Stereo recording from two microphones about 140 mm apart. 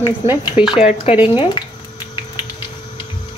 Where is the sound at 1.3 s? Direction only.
35° left (ahead or behind).